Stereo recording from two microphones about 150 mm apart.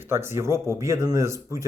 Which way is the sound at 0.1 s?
15° right (ahead or behind).